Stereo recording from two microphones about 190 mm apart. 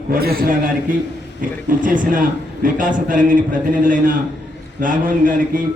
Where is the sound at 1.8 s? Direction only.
45° right (ahead or behind).